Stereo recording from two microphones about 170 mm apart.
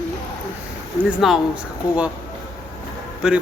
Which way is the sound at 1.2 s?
5° right (ahead or behind).